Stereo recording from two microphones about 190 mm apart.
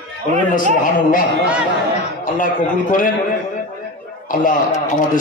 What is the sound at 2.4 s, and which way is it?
Speech, 45° left (ahead or behind).